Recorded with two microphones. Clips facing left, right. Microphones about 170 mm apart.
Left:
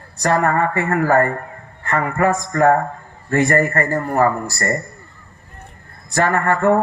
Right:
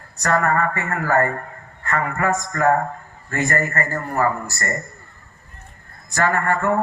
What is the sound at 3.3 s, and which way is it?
A man's voice, 30° left (ahead or behind).